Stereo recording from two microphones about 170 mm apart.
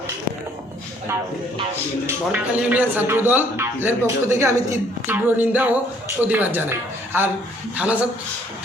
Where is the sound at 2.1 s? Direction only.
10° right (ahead or behind).